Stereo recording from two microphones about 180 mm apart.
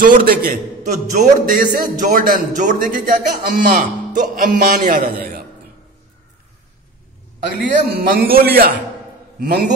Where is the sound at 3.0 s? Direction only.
50° right (ahead or behind).